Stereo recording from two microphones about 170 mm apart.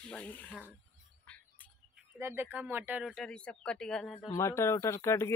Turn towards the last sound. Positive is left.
turn(degrees=15)  # may be behind; listen again after turning